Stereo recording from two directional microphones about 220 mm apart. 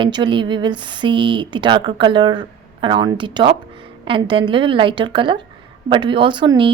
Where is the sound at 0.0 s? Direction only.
20° right (ahead or behind).